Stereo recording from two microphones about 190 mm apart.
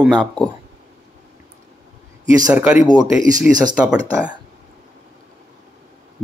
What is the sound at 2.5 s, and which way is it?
Speech, 5° right (ahead or behind).